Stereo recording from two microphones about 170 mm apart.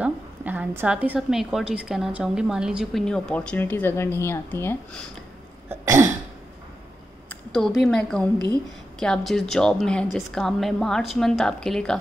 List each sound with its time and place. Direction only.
0.0 s a woman's voice: 10° right (ahead or behind); by 4.7 s 15° left (ahead or behind)
5.7 s cough: 15° right (ahead or behind)
7.2 s a sound: 5° left (ahead or behind)
7.8 s a woman's voice: 5° left (ahead or behind)